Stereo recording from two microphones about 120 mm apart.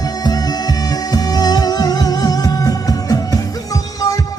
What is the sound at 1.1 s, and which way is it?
Music, 35° left (ahead or behind).